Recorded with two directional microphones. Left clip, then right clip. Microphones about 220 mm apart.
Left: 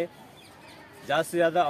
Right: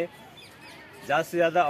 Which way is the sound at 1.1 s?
Centre (ahead or behind).